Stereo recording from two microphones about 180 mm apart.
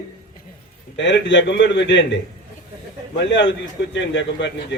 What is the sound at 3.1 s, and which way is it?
Speech, 90° left.